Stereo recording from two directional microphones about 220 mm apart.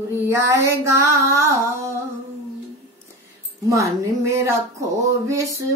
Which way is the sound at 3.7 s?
15° right (ahead or behind).